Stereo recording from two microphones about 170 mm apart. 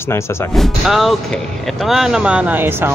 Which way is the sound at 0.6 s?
Centre (ahead or behind).